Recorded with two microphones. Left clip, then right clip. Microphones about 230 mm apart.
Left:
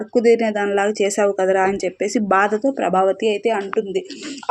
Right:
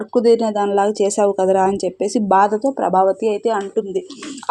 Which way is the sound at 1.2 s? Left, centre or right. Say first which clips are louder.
Right 2 dB; right.